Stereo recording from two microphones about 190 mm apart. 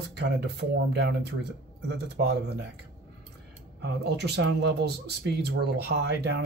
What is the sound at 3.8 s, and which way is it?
Speech, 60° right (ahead or behind).